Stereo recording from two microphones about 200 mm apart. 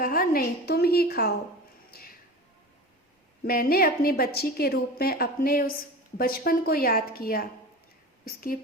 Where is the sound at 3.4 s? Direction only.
50° left (ahead or behind).